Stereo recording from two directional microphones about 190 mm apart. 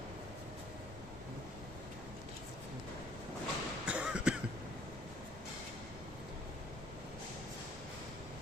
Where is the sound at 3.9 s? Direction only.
5° right (ahead or behind).